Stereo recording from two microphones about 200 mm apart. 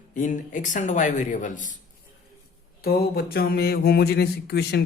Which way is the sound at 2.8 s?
50° left (ahead or behind).